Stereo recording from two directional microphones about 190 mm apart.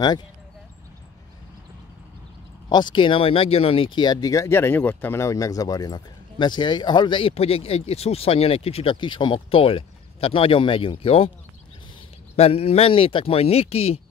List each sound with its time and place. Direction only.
2.7 s speech: 25° left (ahead or behind)
12.4 s speech: 30° left (ahead or behind)